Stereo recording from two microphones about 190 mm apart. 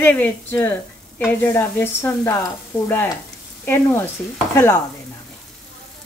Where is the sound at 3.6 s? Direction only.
15° left (ahead or behind).